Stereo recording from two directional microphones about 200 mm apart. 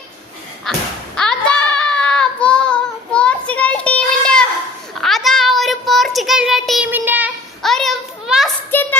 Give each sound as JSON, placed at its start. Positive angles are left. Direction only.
{"t": 0.7, "sound": "speech", "side_deg": 5}
{"t": 1.1, "sound": "child singing", "side_deg": 5}
{"t": 8.7, "sound": "a sound", "side_deg": 10}